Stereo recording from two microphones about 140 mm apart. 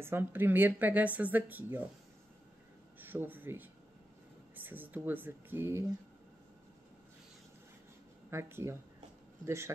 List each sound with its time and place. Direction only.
0.0 s speech: 15° right (ahead or behind)
3.0 s speech: 15° right (ahead or behind)
8.3 s speech: 20° right (ahead or behind)